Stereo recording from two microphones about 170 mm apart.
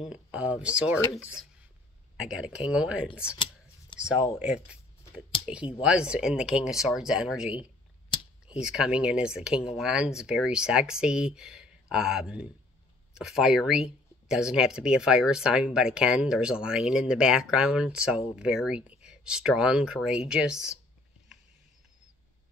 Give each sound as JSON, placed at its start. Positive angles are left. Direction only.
{"t": 0.0, "sound": "speech", "side_deg": -5}
{"t": 3.9, "sound": "a sound", "side_deg": 30}
{"t": 5.8, "sound": "speech", "side_deg": -5}